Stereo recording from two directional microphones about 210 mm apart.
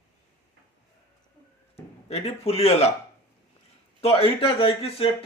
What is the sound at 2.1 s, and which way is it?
Speech, 30° left (ahead or behind).